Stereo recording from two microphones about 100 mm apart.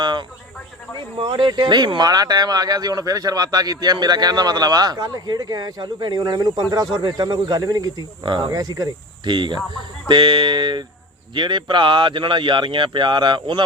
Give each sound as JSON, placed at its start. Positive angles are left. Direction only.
{"t": 0.0, "sound": "cricket", "side_deg": -50}
{"t": 1.2, "sound": "speech", "side_deg": -50}